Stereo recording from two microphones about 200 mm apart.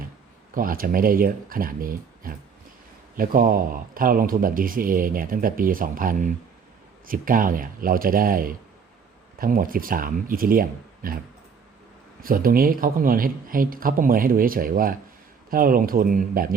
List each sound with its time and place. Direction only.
0.5 s speech: 45° right (ahead or behind)
12.2 s speech: 45° right (ahead or behind)